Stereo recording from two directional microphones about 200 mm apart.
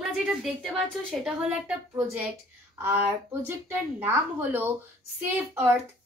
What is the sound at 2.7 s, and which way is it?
A woman's voice, 10° right (ahead or behind).